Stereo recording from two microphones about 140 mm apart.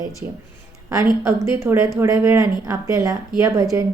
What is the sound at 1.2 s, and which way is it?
Speech, 20° right (ahead or behind).